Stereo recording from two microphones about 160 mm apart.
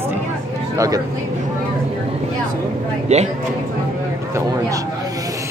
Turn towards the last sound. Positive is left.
turn(degrees=-20)  # may be behind; listen again after turning